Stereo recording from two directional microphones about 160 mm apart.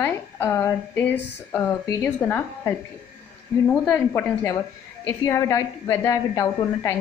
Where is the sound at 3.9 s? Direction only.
15° left (ahead or behind).